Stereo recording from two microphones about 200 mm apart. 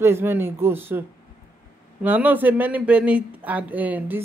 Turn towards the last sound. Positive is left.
turn(degrees=-10)  # may be behind; listen again after turning